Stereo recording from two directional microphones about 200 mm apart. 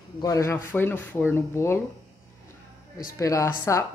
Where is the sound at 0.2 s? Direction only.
15° left (ahead or behind).